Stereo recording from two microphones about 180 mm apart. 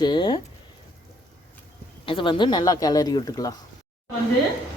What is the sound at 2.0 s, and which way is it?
Speech, 30° left (ahead or behind).